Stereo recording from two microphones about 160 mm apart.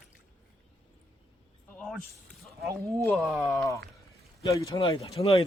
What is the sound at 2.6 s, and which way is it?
Speech, 20° right (ahead or behind).